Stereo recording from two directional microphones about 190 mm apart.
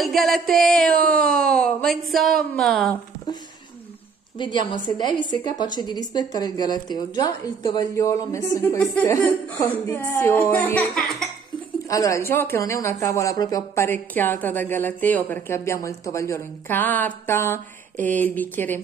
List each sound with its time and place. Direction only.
0.0 s speech: centre (ahead or behind)
4.4 s a woman's voice: 25° left (ahead or behind); by 11.2 s centre (ahead or behind)
11.9 s speech: 15° left (ahead or behind)